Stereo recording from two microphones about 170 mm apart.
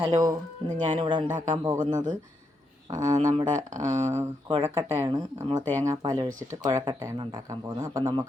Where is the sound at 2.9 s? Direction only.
20° right (ahead or behind).